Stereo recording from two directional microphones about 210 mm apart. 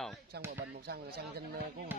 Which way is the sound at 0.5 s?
50° right (ahead or behind).